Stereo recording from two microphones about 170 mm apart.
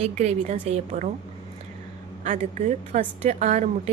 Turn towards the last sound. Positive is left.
turn(degrees=-45)  # may be behind; listen again after turning